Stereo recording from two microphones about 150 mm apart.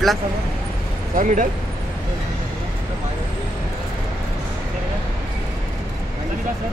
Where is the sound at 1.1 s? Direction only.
60° right (ahead or behind).